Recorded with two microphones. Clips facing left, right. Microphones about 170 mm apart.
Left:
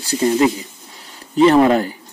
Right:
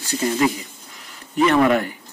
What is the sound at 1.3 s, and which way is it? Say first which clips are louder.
Speech: left 5 dB; 30° left (ahead or behind).